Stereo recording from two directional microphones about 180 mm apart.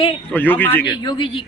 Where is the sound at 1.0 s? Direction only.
25° left (ahead or behind).